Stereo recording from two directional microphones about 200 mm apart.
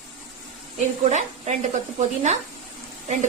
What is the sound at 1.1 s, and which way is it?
Speech, 35° right (ahead or behind).